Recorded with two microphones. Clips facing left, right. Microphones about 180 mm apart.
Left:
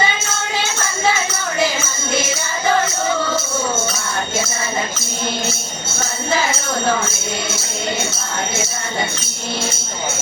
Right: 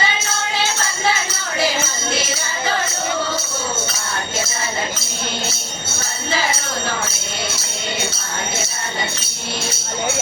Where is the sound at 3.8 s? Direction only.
50° left (ahead or behind).